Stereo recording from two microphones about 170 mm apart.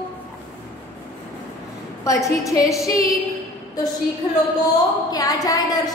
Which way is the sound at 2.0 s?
20° left (ahead or behind).